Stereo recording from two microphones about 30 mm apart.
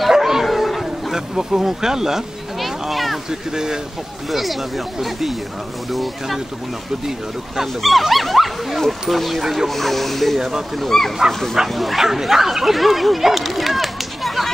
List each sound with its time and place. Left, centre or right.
0.2 s bow-wow: centre
0.5 s a sound: centre
1.1 s speech: centre
2.6 s a sound: centre
3.3 s speech: centre
4.3 s speech: centre
9.7 s speech: centre
11.7 s speech: centre
12.0 s dog: centre